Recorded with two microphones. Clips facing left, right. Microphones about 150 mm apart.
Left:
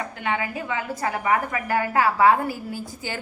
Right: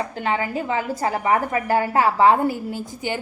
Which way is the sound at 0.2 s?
35° right (ahead or behind).